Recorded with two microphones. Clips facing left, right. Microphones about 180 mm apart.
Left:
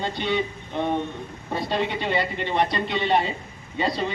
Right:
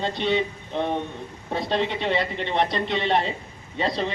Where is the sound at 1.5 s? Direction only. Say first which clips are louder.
Right 1 dB; 5° left (ahead or behind).